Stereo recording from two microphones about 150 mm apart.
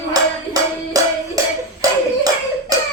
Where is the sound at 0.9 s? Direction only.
25° right (ahead or behind).